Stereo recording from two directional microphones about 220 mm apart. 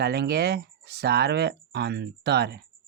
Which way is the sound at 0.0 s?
45° right (ahead or behind).